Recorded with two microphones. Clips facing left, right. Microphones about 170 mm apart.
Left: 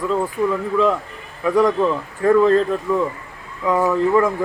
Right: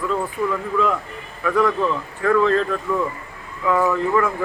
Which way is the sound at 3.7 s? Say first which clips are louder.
Left 2 dB; 20° left (ahead or behind).